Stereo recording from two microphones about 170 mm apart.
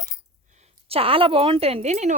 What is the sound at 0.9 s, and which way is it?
Speech, 35° right (ahead or behind).